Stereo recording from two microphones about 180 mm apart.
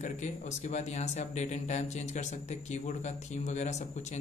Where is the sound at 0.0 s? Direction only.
40° left (ahead or behind).